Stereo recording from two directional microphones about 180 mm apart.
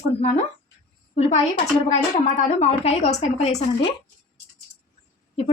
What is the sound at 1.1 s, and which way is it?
A woman's voice, 40° left (ahead or behind).